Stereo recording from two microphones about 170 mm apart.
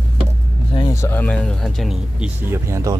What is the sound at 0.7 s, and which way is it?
Vehicle, 20° left (ahead or behind).